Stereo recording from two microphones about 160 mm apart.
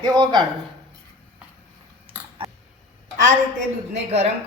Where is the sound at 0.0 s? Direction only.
25° right (ahead or behind).